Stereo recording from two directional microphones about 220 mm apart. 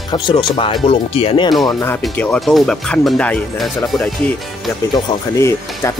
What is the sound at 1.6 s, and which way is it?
Speech, 10° left (ahead or behind).